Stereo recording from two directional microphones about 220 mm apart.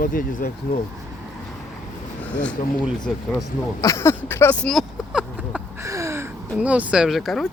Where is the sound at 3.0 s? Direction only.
5° left (ahead or behind).